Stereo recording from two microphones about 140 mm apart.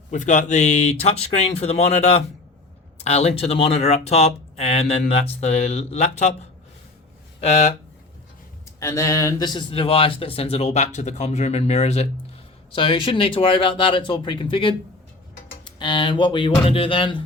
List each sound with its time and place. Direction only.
0.1 s speech: 60° left (ahead or behind)
7.4 s speech: 50° left (ahead or behind)
8.8 s speech: 20° left (ahead or behind); by 12.0 s 50° left (ahead or behind)
12.7 s speech: 40° left (ahead or behind)